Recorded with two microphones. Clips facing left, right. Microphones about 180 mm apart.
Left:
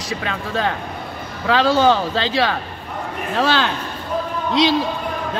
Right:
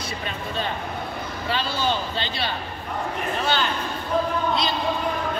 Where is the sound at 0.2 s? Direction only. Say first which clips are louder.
Left 7 dB; 90° left.